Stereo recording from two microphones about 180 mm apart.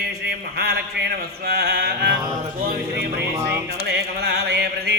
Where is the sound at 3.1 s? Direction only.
65° right (ahead or behind).